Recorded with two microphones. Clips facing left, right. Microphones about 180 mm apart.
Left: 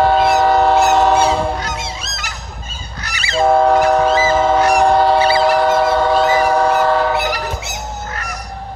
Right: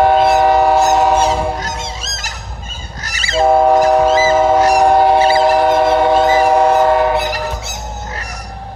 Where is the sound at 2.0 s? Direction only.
40° right (ahead or behind).